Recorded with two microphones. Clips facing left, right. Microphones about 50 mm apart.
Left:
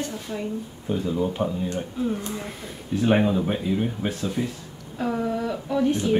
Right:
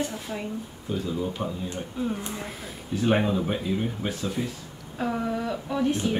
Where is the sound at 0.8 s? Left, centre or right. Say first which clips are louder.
Left 4 dB; centre.